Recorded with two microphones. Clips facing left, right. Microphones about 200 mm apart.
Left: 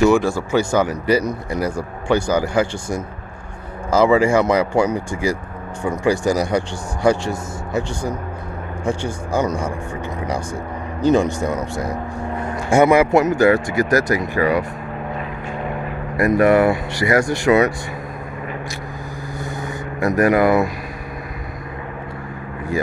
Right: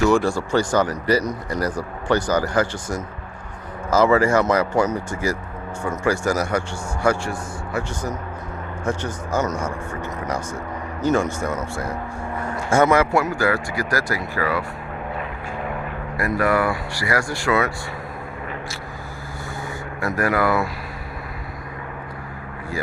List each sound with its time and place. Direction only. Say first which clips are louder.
0.1 s speech: left 2 dB; 5° left (ahead or behind)
11.0 s speech: left 4 dB; 15° left (ahead or behind)
16.2 s speech: left 7 dB; 20° left (ahead or behind)
20.0 s speech: left 6 dB; 20° left (ahead or behind)